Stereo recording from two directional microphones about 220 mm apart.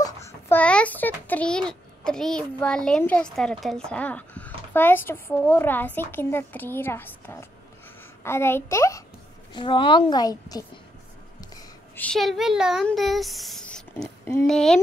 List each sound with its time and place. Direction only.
0.0 s a child's voice: 10° left (ahead or behind)